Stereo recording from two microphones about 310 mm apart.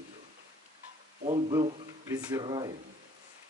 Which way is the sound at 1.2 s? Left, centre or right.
Centre.